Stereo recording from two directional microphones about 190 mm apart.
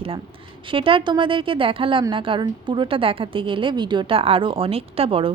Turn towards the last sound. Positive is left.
turn(degrees=-30)  # may be behind; listen again after turning